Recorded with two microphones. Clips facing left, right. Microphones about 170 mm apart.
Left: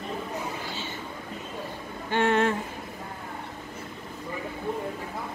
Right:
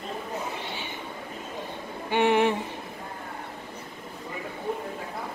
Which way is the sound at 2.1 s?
15° right (ahead or behind).